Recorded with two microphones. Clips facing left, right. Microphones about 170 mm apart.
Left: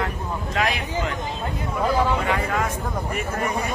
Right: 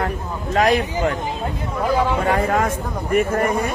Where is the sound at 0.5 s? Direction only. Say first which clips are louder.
Right 9 dB; 45° right (ahead or behind).